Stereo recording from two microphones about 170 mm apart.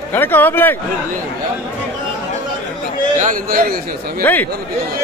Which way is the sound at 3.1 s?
50° right (ahead or behind).